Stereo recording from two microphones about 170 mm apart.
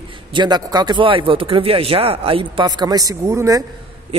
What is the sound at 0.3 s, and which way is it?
A woman's voice, 25° right (ahead or behind).